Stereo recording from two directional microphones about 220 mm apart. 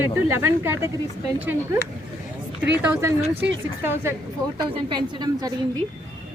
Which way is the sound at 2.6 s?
10° right (ahead or behind).